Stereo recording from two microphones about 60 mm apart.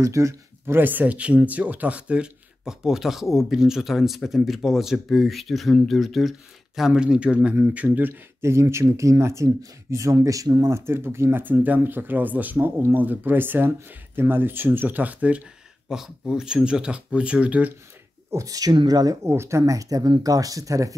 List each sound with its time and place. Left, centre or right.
0.0 s speech: right
0.7 s speech: right
7.5 s speech: right
8.1 s speech: right
10.7 s speech: right
11.4 s speech: right
15.9 s speech: centre; by 17.7 s right
18.3 s speech: right
19.2 s speech: right